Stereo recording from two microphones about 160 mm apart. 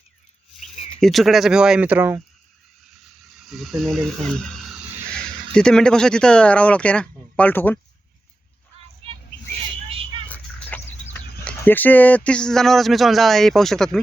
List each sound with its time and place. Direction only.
0.9 s speech: centre (ahead or behind)
3.5 s speech: centre (ahead or behind)
10.2 s a sound: 10° left (ahead or behind)
11.4 s speech: 10° left (ahead or behind)